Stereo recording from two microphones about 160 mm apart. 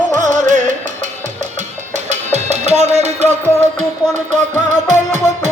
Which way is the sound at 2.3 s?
45° right (ahead or behind).